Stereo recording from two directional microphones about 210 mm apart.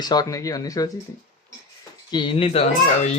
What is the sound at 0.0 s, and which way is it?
Speech, 20° left (ahead or behind).